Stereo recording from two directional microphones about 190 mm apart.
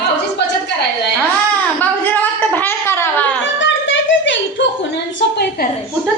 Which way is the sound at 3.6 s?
75° left (ahead or behind).